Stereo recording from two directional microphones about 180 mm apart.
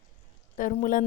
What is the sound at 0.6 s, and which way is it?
Speech, 50° left (ahead or behind).